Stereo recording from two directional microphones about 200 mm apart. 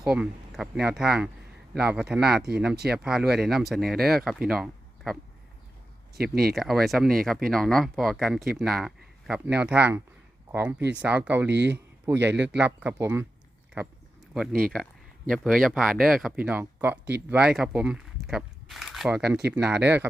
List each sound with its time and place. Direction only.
0.0 s speech: 5° right (ahead or behind)
6.1 s speech: 50° right (ahead or behind)
6.5 s speech: centre (ahead or behind)
11.4 s speech: 60° right (ahead or behind)
12.0 s speech: 10° right (ahead or behind)
14.3 s speech: centre (ahead or behind)